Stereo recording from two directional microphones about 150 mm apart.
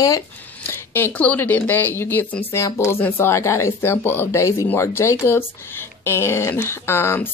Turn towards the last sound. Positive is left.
turn(degrees=15)  # may be behind; listen again after turning